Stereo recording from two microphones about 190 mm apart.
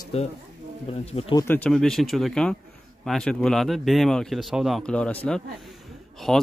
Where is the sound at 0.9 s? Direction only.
30° left (ahead or behind).